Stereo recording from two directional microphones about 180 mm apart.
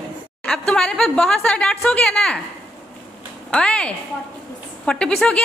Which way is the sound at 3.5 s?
5° left (ahead or behind).